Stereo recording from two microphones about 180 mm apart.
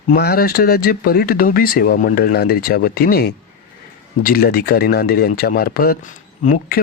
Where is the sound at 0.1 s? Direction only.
60° left (ahead or behind).